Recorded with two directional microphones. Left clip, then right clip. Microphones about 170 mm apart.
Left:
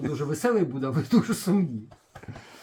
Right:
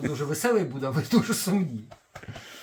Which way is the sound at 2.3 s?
10° right (ahead or behind).